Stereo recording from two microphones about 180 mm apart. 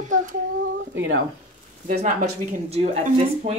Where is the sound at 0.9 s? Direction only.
80° right.